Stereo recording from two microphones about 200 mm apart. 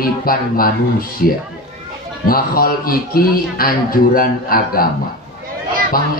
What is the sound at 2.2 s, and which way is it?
Speech, 45° left (ahead or behind).